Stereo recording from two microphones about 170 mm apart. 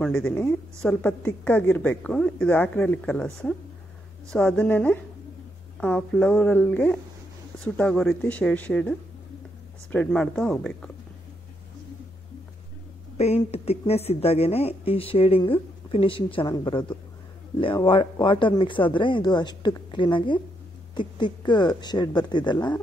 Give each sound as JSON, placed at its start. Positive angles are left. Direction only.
{"t": 0.0, "sound": "a woman's voice", "side_deg": 5}
{"t": 13.2, "sound": "speech", "side_deg": 40}